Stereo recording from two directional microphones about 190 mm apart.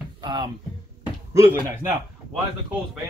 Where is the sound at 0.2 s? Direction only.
20° right (ahead or behind).